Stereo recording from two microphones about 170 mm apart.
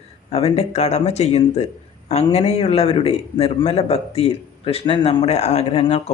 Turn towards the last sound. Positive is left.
turn(degrees=35)  # may be behind; listen again after turning